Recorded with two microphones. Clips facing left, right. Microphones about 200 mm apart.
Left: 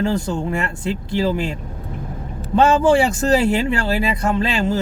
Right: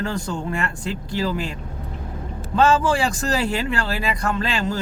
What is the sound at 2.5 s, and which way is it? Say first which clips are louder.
Speech: left 4 dB; 25° left (ahead or behind).